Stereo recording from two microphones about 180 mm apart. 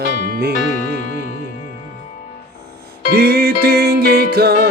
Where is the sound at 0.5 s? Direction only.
45° left (ahead or behind).